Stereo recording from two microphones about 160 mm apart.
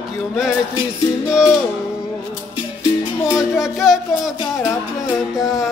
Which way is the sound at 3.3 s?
15° left (ahead or behind).